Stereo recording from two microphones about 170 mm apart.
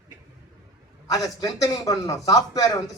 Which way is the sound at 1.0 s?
20° left (ahead or behind).